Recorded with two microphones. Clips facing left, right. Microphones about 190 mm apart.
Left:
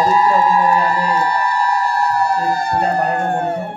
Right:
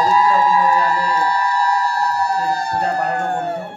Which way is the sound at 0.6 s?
20° left (ahead or behind).